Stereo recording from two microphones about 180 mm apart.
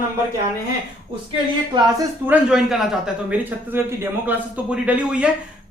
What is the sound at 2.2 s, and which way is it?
A man's voice, 5° right (ahead or behind).